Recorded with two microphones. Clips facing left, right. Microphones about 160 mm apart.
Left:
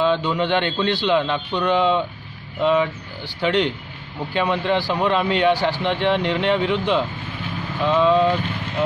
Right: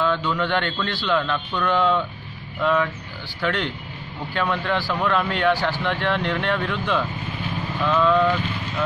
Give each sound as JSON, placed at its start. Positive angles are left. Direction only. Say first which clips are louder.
{"t": 0.0, "sound": "speech", "louder": "left 3 dB", "side_deg": 20}